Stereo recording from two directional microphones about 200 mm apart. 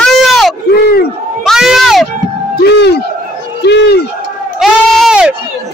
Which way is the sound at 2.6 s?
55° left (ahead or behind).